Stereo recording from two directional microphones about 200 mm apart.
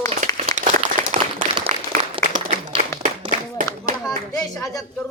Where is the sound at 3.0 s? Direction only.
40° right (ahead or behind).